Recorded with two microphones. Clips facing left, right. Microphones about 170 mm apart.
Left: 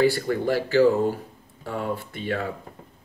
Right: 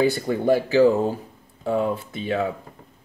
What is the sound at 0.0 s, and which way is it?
Speech, 20° right (ahead or behind).